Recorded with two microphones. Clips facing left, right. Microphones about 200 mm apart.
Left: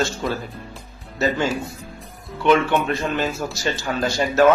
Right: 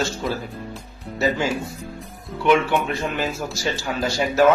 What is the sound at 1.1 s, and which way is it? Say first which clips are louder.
Speech: even; 10° right (ahead or behind).